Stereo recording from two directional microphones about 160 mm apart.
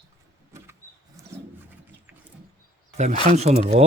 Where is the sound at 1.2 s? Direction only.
20° right (ahead or behind).